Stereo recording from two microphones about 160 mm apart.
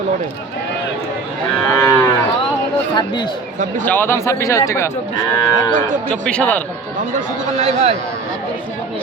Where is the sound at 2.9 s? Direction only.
25° left (ahead or behind).